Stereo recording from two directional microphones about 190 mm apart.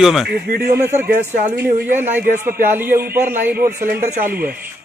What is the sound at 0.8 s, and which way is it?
Speech, 10° right (ahead or behind).